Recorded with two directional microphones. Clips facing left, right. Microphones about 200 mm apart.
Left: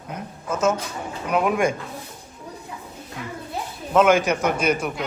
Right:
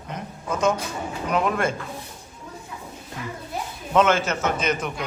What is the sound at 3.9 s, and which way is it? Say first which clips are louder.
Speech: left 3 dB; 10° left (ahead or behind).